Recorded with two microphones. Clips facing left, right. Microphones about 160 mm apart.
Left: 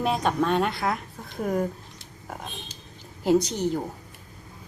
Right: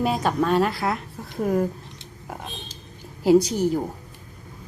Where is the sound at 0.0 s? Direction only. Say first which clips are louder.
Right 2 dB; 5° right (ahead or behind).